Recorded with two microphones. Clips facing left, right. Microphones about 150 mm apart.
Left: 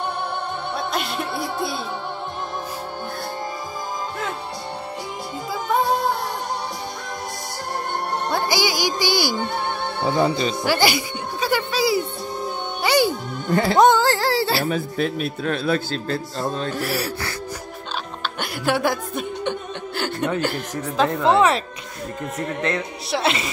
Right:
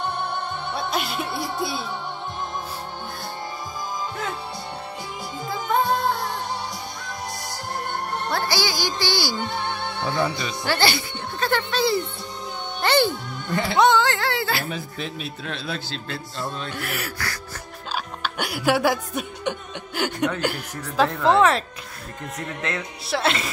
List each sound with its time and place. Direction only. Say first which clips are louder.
0.7 s music: even; centre (ahead or behind)
8.3 s speech: left 3 dB; 20° left (ahead or behind)
9.4 s music: left 3 dB; 50° left (ahead or behind)
10.0 s speech: left 6 dB; 20° left (ahead or behind)
10.6 s speech: even; 10° left (ahead or behind)
12.8 s music: left 1 dB; 10° left (ahead or behind)
13.5 s speech: left 3 dB; 40° left (ahead or behind)
14.8 s a man's voice: left 8 dB; 55° left (ahead or behind); by 17.3 s 35° left (ahead or behind)
18.2 s speech: right 1 dB; 10° right (ahead or behind)
21.1 s speech: left 1 dB; centre (ahead or behind)